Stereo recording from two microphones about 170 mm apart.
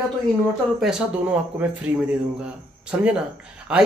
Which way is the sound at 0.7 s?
5° right (ahead or behind).